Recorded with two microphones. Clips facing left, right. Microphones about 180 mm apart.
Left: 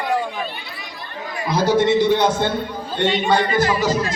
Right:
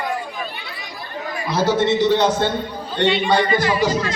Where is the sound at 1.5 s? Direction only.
15° left (ahead or behind).